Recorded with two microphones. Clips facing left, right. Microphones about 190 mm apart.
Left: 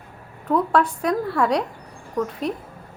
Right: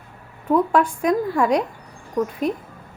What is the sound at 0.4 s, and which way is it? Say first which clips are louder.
Speech: right 2 dB; 10° right (ahead or behind).